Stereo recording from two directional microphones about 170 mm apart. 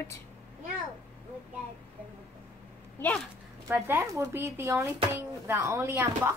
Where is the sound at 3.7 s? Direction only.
15° right (ahead or behind).